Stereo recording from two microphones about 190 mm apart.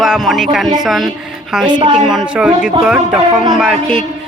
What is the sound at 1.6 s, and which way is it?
Speech, 25° right (ahead or behind).